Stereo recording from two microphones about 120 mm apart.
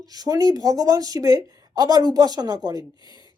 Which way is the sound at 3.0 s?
40° left (ahead or behind).